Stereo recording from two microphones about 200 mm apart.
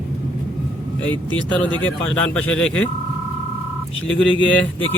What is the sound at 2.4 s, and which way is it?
Speech, 5° left (ahead or behind).